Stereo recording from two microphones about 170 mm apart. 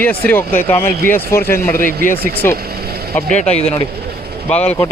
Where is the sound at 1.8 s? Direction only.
55° left (ahead or behind).